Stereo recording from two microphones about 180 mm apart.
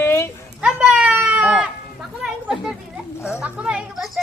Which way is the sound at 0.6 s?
5° right (ahead or behind).